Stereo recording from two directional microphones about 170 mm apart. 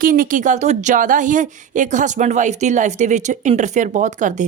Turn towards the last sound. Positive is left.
turn(degrees=-45)  # may be behind; listen again after turning